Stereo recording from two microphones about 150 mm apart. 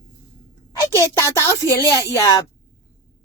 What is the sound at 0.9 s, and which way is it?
A woman's voice, 15° left (ahead or behind).